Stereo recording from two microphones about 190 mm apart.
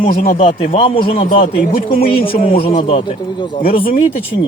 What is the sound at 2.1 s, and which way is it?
Speech, 30° left (ahead or behind).